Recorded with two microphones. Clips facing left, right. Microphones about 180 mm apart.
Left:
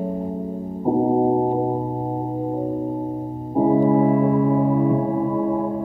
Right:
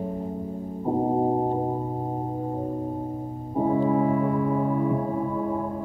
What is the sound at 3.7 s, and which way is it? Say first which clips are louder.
Music: left 5 dB; 25° left (ahead or behind).